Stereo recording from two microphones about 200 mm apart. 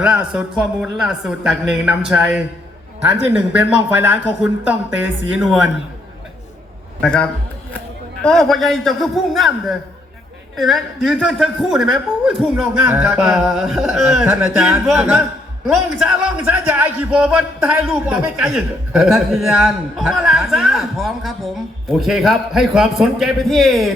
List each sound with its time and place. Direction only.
0.0 s a man's voice: 5° right (ahead or behind)
7.0 s a man's voice: 5° left (ahead or behind)
16.5 s a man's voice: 10° right (ahead or behind)